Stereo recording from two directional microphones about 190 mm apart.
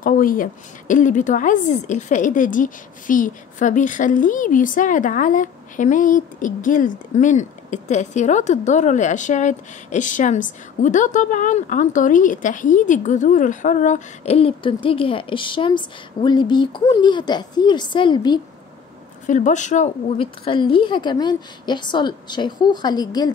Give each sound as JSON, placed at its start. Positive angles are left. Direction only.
{"t": 0.0, "sound": "a woman's voice", "side_deg": 45}
{"t": 19.2, "sound": "a woman's voice", "side_deg": 40}